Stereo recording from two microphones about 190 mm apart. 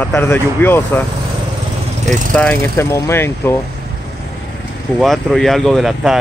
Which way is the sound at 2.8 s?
15° left (ahead or behind).